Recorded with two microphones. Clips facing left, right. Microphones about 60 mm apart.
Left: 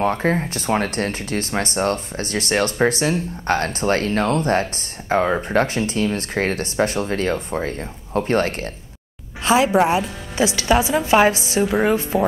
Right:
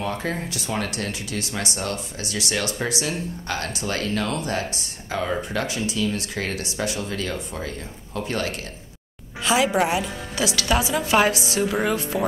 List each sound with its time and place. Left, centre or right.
0.0 s a woman's voice: left